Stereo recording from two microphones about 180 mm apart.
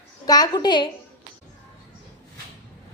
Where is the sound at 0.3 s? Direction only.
20° left (ahead or behind).